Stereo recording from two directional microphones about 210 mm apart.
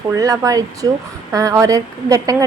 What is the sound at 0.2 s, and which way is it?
A woman's voice, 15° right (ahead or behind).